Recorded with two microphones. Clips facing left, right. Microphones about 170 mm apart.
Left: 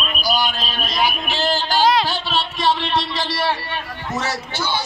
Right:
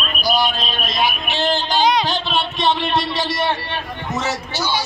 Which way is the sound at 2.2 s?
Centre (ahead or behind).